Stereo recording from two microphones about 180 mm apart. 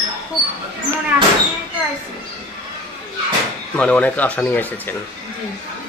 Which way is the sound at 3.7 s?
10° left (ahead or behind).